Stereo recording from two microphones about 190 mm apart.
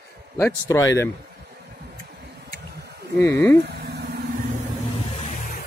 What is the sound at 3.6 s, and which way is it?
Vehicle, 60° right (ahead or behind).